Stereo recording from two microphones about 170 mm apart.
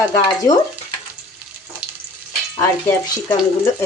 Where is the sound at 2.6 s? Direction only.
20° left (ahead or behind).